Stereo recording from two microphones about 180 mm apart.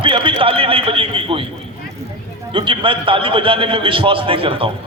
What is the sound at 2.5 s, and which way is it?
A man's voice, 30° right (ahead or behind).